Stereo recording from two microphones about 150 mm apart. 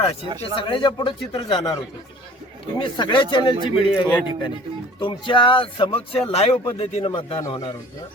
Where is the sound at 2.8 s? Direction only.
30° left (ahead or behind).